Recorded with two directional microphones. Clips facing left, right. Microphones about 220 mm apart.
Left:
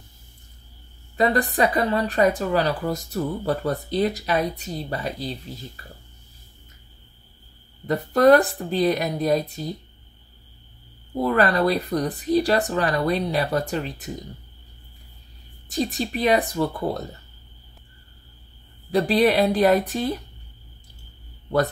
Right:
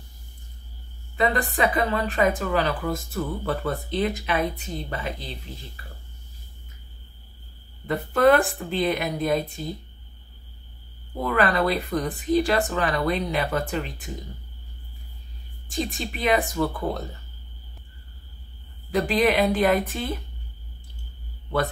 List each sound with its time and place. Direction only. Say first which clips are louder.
1.1 s a woman's voice: left 3 dB; 35° left (ahead or behind)
7.8 s a woman's voice: left 2 dB; 40° left (ahead or behind)
11.1 s a woman's voice: left 2 dB; 35° left (ahead or behind)
15.7 s a woman's voice: left 4 dB; 40° left (ahead or behind)
18.9 s a woman's voice: left 3 dB; 35° left (ahead or behind)